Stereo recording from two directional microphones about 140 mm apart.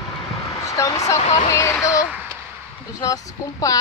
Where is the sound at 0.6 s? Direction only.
25° left (ahead or behind).